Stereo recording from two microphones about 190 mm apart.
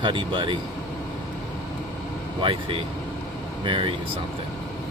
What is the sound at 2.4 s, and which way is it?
Speech, 25° right (ahead or behind).